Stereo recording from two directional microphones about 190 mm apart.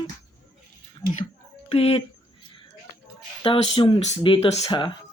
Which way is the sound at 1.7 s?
30° left (ahead or behind).